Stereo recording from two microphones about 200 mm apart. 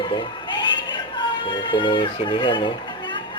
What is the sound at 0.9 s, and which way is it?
Speech, 25° left (ahead or behind).